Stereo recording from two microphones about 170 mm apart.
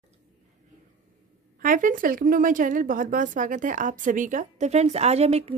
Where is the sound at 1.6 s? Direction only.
55° right (ahead or behind).